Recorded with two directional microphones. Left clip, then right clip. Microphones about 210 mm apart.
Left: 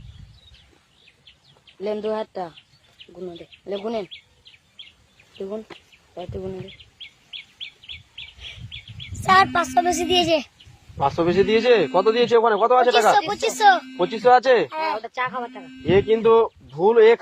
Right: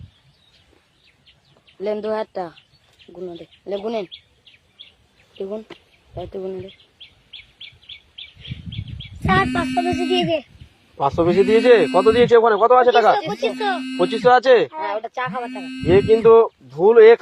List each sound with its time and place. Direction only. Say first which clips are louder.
1.8 s speech: right 2 dB; 15° right (ahead or behind)
5.4 s speech: right 2 dB; 15° right (ahead or behind)
9.2 s a woman's voice: left 3 dB; 60° left (ahead or behind)
10.9 s speech: right 3 dB; 20° right (ahead or behind)
13.1 s a woman's voice: left 2 dB; 60° left (ahead or behind)
13.9 s speech: right 2 dB; 20° right (ahead or behind)